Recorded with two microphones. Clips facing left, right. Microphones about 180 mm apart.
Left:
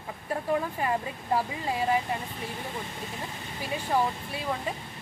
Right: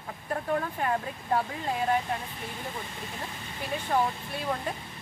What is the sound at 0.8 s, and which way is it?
Speech, 5° left (ahead or behind).